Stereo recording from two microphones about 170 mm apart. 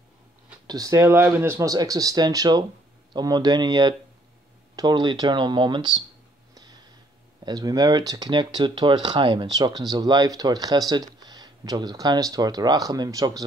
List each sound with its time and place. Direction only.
0.7 s speech: 20° right (ahead or behind)
6.5 s a sound: 25° right (ahead or behind)
7.4 s speech: 20° right (ahead or behind)